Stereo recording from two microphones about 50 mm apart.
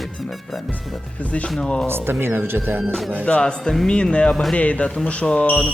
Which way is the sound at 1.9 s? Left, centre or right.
Right.